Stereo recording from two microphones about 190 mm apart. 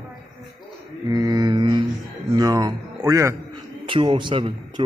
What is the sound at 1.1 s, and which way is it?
Mantra, 20° right (ahead or behind).